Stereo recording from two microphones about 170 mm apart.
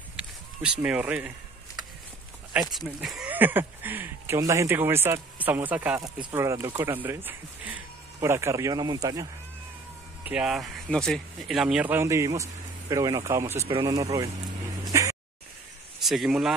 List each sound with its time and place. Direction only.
0.1 s run: 5° right (ahead or behind)
2.5 s speech: centre (ahead or behind); by 9.3 s 20° right (ahead or behind)
10.2 s speech: 5° right (ahead or behind)
14.9 s music: 20° right (ahead or behind)
16.0 s a man's voice: centre (ahead or behind)